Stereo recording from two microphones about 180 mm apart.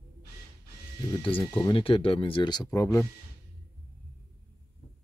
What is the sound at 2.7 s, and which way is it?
Speech, 15° left (ahead or behind).